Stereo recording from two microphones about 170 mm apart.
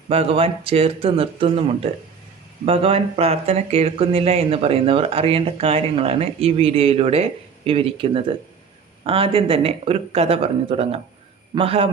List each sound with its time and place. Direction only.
0.1 s speech: 35° right (ahead or behind)